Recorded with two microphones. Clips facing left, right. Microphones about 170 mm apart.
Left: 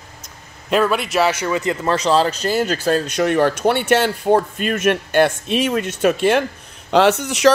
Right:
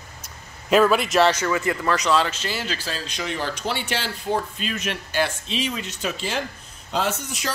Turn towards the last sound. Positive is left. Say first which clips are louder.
# left 14 dB
turn(degrees=75)  # may be behind; listen again after turning